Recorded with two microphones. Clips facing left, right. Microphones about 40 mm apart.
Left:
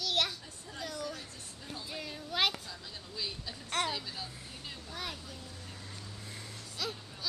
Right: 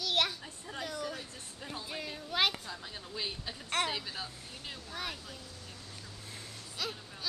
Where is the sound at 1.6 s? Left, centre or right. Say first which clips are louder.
Right 2 dB; right.